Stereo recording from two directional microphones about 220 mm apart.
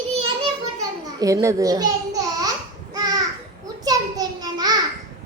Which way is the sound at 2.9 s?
15° right (ahead or behind).